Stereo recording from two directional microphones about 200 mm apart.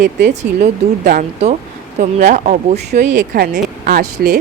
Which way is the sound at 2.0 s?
35° right (ahead or behind).